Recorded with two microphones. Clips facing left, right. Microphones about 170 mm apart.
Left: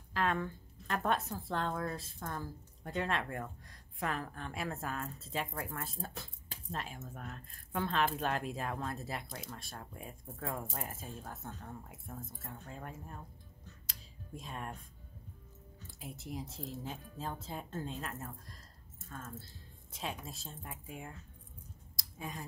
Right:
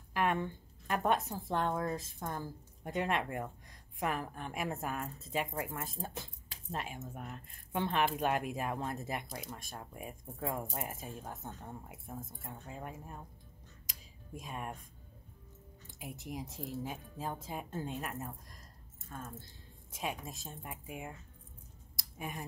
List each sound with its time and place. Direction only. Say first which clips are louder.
0.1 s a woman's voice: right 1 dB; 15° right (ahead or behind)
14.4 s a woman's voice: right 2 dB; 15° right (ahead or behind)
16.0 s a woman's voice: right 1 dB; 15° right (ahead or behind)
22.2 s a woman's voice: right 1 dB; 20° right (ahead or behind)